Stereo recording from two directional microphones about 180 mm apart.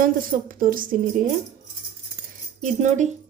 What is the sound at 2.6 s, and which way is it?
Speech, 45° right (ahead or behind).